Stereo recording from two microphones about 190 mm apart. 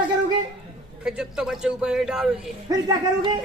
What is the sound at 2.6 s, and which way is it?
Speech, 20° right (ahead or behind).